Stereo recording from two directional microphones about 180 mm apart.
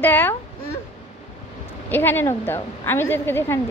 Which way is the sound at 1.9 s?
10° left (ahead or behind).